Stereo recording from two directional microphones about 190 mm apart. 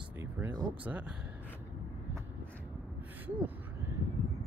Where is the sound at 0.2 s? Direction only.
10° right (ahead or behind).